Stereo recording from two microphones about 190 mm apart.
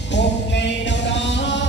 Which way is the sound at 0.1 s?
70° left (ahead or behind).